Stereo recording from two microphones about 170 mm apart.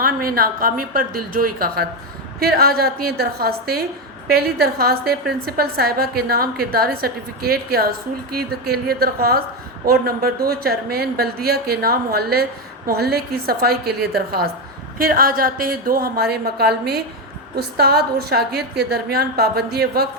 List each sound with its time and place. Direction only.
0.0 s a woman's voice: 60° right (ahead or behind)